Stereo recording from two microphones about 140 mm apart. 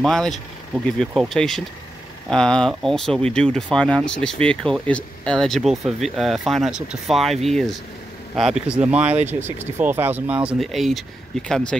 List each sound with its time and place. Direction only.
0.0 s speech: 5° left (ahead or behind)
10.6 s speech: centre (ahead or behind)